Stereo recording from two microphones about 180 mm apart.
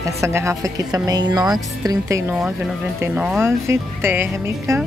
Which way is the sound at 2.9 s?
10° right (ahead or behind).